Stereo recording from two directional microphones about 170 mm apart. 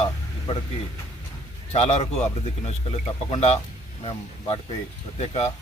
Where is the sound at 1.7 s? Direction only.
40° left (ahead or behind).